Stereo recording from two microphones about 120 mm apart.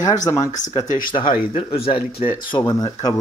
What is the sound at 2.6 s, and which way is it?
Speech, 35° left (ahead or behind).